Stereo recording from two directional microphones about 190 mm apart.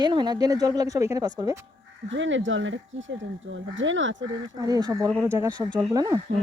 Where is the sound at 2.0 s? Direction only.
75° right (ahead or behind).